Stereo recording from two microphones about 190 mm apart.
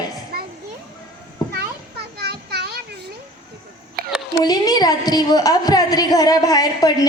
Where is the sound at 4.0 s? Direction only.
55° right (ahead or behind).